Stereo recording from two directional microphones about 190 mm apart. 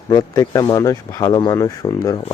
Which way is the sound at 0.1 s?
20° left (ahead or behind).